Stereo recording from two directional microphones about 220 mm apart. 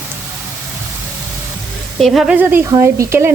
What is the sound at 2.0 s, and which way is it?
Speech, centre (ahead or behind).